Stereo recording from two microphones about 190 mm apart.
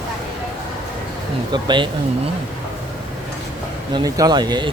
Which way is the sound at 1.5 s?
25° right (ahead or behind).